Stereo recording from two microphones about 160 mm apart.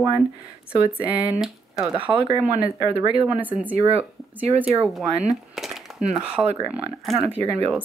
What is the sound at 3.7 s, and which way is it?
Speech, 40° right (ahead or behind).